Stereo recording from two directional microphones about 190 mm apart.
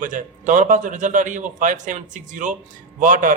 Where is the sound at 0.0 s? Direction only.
40° right (ahead or behind).